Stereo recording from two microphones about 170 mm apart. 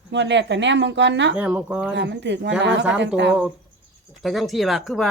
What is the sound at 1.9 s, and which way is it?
Speech, 90° right.